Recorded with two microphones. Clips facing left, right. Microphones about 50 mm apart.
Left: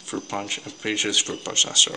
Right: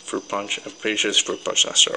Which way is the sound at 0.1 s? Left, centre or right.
Right.